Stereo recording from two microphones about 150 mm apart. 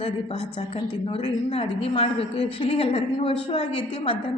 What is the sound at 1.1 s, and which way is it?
A woman's voice, 40° left (ahead or behind).